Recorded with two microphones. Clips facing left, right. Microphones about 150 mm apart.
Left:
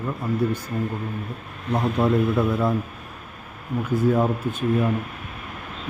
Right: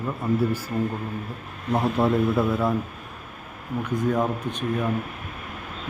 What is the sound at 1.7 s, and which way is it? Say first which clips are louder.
Speech: left 1 dB; centre (ahead or behind).